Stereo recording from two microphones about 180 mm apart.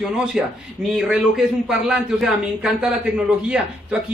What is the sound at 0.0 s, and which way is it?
A man's voice, 5° right (ahead or behind).